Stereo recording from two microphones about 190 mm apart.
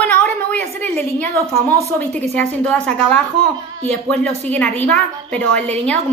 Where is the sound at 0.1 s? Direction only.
5° left (ahead or behind).